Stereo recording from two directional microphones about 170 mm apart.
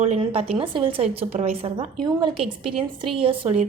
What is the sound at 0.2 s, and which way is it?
A woman's voice, 30° right (ahead or behind).